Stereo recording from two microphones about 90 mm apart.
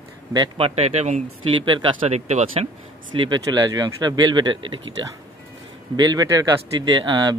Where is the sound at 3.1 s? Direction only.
60° right (ahead or behind).